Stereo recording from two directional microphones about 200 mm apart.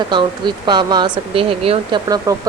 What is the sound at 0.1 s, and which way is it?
Speech, 25° right (ahead or behind).